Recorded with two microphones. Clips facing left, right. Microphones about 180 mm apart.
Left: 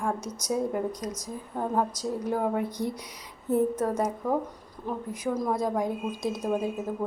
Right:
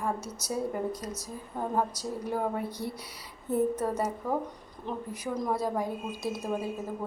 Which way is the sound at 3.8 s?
10° right (ahead or behind).